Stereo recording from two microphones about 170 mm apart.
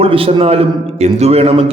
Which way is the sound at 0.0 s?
35° right (ahead or behind).